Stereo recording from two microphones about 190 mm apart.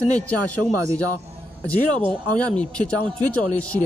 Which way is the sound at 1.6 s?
5° left (ahead or behind).